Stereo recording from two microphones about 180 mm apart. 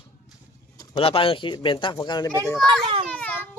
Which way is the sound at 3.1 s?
10° left (ahead or behind).